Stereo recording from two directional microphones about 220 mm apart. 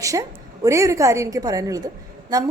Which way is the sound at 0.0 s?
15° right (ahead or behind).